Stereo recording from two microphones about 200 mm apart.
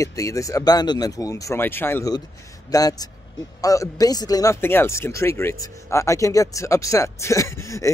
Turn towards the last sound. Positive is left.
turn(degrees=15)  # may be behind; listen again after turning